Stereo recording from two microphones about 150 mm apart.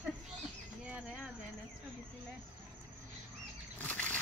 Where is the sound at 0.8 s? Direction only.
5° right (ahead or behind).